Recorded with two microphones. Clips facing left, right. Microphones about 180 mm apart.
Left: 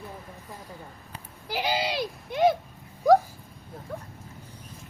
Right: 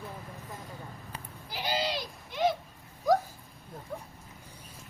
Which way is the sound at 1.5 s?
75° left (ahead or behind).